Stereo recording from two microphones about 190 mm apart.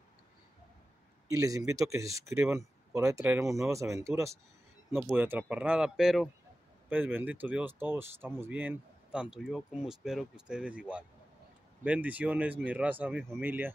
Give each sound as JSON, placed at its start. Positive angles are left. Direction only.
{"t": 1.3, "sound": "speech", "side_deg": -15}